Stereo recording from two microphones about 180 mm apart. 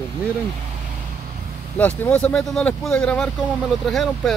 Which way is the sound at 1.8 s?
5° left (ahead or behind).